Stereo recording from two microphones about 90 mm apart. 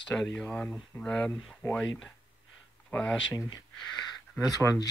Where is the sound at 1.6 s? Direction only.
25° left (ahead or behind).